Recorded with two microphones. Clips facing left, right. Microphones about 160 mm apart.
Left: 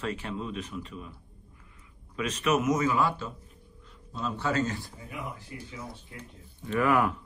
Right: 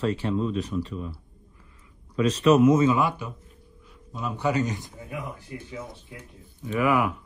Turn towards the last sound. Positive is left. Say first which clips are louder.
# right 2 dB
turn(degrees=-10)  # may be behind; listen again after turning